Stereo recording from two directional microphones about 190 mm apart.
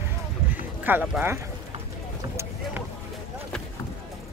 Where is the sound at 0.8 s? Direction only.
10° right (ahead or behind).